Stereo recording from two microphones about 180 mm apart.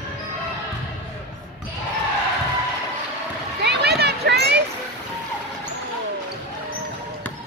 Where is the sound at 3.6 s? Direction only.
65° right (ahead or behind).